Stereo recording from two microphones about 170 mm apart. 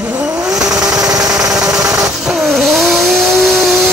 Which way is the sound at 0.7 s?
20° right (ahead or behind).